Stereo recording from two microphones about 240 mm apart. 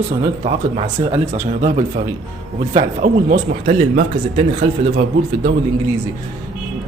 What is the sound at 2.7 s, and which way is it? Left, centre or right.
A man's voice, right.